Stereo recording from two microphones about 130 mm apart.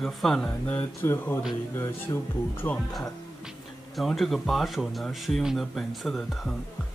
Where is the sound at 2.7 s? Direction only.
Centre (ahead or behind).